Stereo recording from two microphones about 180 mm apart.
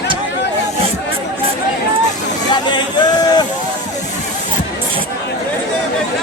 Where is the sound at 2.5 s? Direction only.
25° left (ahead or behind).